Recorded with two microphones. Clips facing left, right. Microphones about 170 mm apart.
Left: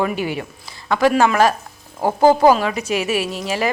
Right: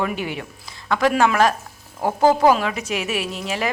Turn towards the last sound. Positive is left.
turn(degrees=0)  # may be behind; listen again after turning